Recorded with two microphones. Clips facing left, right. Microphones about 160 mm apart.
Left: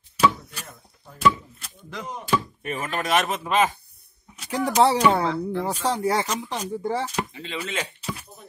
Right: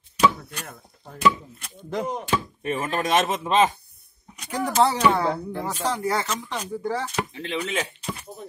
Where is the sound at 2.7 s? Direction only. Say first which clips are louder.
Right 2 dB; 25° right (ahead or behind).